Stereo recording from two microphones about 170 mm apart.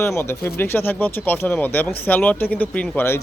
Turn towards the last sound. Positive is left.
turn(degrees=15)  # may be behind; listen again after turning